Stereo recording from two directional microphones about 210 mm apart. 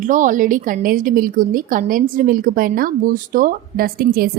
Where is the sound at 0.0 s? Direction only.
40° right (ahead or behind).